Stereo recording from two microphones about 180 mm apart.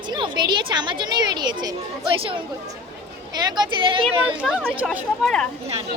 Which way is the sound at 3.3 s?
25° right (ahead or behind).